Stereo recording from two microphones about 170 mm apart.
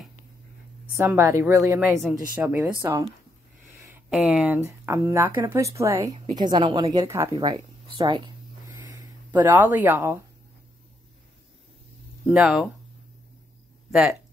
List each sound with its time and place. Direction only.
0.9 s a woman's voice: 15° right (ahead or behind)
3.9 s speech: 5° right (ahead or behind)
4.6 s a woman's voice: 15° right (ahead or behind)
12.3 s speech: centre (ahead or behind)